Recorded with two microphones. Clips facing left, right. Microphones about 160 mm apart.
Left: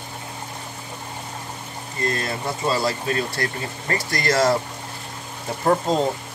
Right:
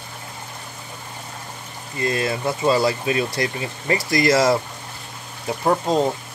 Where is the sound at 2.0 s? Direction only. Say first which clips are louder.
Right 3 dB; 15° right (ahead or behind).